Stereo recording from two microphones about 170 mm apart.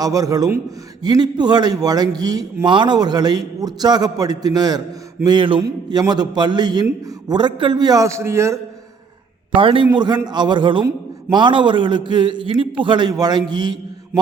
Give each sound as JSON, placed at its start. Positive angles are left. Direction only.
{"t": 0.0, "sound": "a man's voice", "side_deg": -20}
{"t": 9.5, "sound": "a man's voice", "side_deg": -30}